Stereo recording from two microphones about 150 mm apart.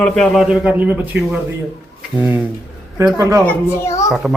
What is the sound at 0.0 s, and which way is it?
Speech, 5° left (ahead or behind).